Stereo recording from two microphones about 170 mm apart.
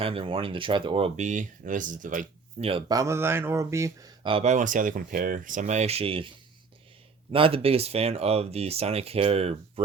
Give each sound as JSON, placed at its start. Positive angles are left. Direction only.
{"t": 0.0, "sound": "speech", "side_deg": -30}
{"t": 2.9, "sound": "speech", "side_deg": -15}